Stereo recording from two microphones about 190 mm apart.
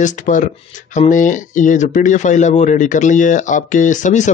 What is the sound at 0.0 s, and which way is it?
Speech, 40° left (ahead or behind).